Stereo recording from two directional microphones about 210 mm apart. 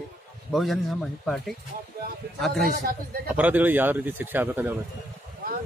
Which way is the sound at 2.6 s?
45° right (ahead or behind).